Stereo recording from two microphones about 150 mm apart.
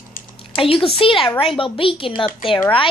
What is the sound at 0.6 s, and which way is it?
A woman's voice, 35° left (ahead or behind).